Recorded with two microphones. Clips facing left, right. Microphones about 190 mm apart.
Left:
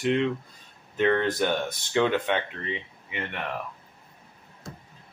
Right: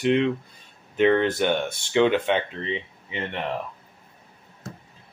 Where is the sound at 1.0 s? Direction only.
20° right (ahead or behind).